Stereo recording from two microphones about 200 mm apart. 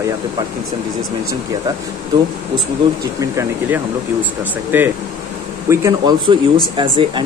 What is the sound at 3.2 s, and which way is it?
Speech, 15° right (ahead or behind).